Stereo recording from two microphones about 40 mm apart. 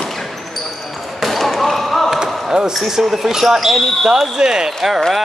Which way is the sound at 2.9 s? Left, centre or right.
Centre.